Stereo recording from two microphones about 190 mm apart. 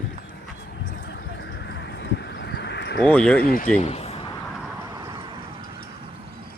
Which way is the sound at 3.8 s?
35° left (ahead or behind).